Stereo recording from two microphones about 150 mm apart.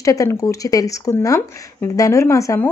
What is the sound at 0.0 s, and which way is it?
Speech, 20° left (ahead or behind).